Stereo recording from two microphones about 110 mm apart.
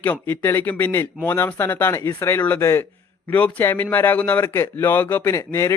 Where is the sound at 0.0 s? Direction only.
20° left (ahead or behind).